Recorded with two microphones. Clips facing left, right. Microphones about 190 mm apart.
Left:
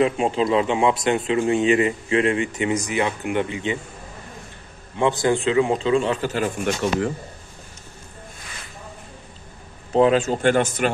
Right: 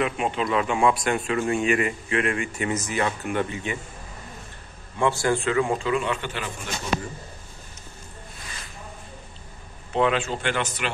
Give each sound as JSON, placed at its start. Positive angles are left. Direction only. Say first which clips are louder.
{"t": 0.0, "sound": "a man's voice", "louder": "left 6 dB", "side_deg": 30}
{"t": 4.9, "sound": "a man's voice", "louder": "left 3 dB", "side_deg": 20}
{"t": 6.6, "sound": "speech", "louder": "left 6 dB", "side_deg": 70}
{"t": 9.9, "sound": "a man's voice", "louder": "left 6 dB", "side_deg": 40}